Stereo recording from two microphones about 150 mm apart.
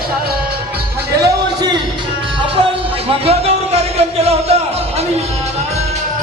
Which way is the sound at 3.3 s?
45° right (ahead or behind).